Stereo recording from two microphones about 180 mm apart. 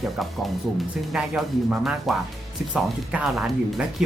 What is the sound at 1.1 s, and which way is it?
Speech, 5° right (ahead or behind).